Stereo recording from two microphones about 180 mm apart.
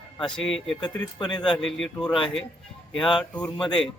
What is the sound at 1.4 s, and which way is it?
Speech, 5° left (ahead or behind).